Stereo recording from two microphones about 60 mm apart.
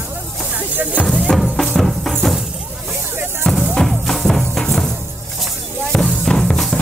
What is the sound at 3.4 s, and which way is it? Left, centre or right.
Music, centre.